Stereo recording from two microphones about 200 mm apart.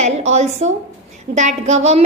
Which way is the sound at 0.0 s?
35° right (ahead or behind).